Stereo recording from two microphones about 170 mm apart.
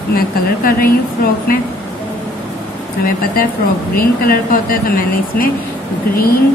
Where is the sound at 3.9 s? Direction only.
60° left (ahead or behind).